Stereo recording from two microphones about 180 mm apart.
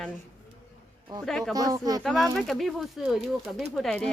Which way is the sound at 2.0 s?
Centre (ahead or behind).